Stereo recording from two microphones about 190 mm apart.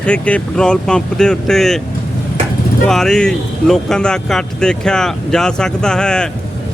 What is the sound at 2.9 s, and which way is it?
Speech, centre (ahead or behind).